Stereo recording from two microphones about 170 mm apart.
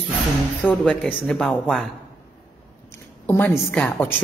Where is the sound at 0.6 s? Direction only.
5° right (ahead or behind).